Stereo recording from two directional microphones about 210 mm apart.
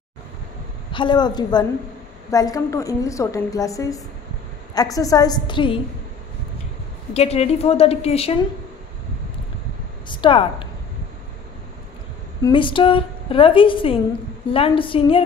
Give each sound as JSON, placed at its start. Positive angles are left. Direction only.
{"t": 0.9, "sound": "a woman's voice", "side_deg": 20}
{"t": 7.2, "sound": "a woman's voice", "side_deg": 30}
{"t": 10.0, "sound": "a woman's voice", "side_deg": 25}
{"t": 12.4, "sound": "a woman's voice", "side_deg": 25}